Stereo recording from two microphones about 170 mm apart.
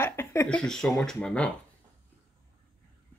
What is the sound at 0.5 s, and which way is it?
Speech, 5° left (ahead or behind).